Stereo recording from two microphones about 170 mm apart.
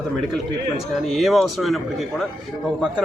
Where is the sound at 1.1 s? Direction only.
Centre (ahead or behind).